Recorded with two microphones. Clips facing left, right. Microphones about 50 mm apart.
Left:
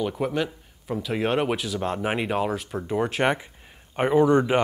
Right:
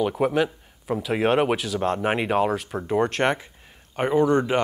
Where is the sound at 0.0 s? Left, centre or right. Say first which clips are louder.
Right 4 dB; centre.